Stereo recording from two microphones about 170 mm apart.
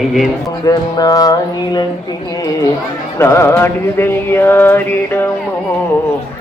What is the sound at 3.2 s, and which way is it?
Mantra, 15° left (ahead or behind).